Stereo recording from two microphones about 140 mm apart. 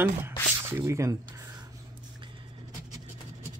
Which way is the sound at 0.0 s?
15° right (ahead or behind).